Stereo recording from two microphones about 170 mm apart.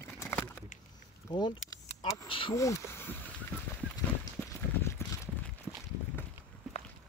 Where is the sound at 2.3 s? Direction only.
30° left (ahead or behind).